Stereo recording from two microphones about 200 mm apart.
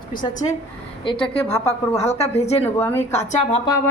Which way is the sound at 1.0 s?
25° left (ahead or behind).